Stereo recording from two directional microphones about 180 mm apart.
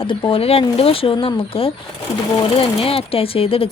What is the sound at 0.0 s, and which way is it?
Speech, 30° left (ahead or behind).